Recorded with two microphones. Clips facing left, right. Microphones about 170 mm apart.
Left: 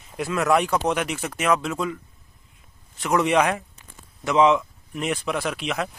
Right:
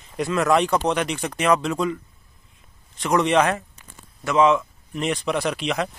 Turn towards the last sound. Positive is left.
turn(degrees=0)  # may be behind; listen again after turning